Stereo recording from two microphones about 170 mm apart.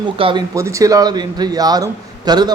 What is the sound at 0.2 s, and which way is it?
Speech, 30° right (ahead or behind).